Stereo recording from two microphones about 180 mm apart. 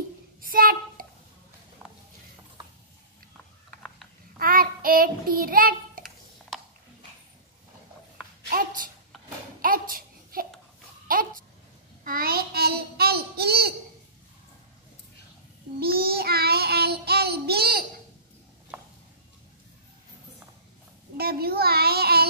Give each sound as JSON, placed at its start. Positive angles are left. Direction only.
{"t": 0.4, "sound": "a sound", "side_deg": -55}
{"t": 4.4, "sound": "child singing", "side_deg": -55}
{"t": 8.5, "sound": "a sound", "side_deg": -50}
{"t": 9.6, "sound": "babbling", "side_deg": -50}
{"t": 12.0, "sound": "child singing", "side_deg": -55}
{"t": 15.8, "sound": "child singing", "side_deg": -55}
{"t": 21.2, "sound": "child singing", "side_deg": -60}